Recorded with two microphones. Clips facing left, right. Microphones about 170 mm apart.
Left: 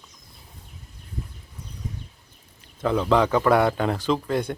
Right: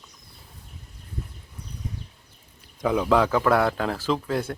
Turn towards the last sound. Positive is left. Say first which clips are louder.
# left 2 dB
turn(degrees=0)  # may be behind; listen again after turning